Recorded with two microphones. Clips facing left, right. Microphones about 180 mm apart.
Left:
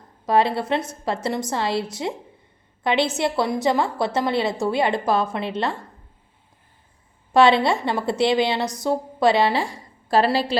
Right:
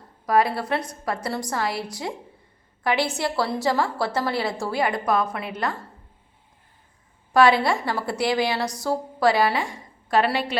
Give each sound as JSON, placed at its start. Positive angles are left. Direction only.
{"t": 0.3, "sound": "a woman's voice", "side_deg": 25}
{"t": 7.3, "sound": "a woman's voice", "side_deg": 25}